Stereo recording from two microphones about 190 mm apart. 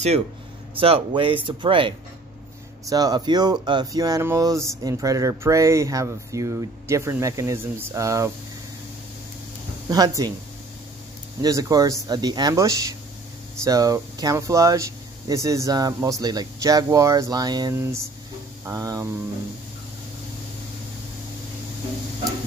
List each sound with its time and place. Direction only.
0.7 s speech: 30° right (ahead or behind)
9.8 s speech: 20° right (ahead or behind)
11.4 s speech: 20° right (ahead or behind)